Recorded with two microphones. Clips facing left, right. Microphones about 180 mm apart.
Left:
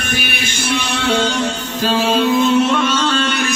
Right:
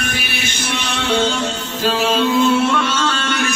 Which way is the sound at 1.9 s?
15° left (ahead or behind).